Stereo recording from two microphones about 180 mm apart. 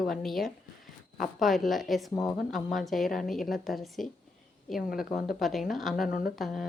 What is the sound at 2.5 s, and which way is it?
Speech, centre (ahead or behind).